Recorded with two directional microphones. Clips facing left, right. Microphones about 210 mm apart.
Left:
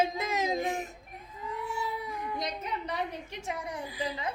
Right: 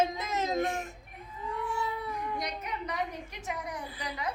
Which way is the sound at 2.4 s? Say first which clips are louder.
Left 1 dB; 30° left (ahead or behind).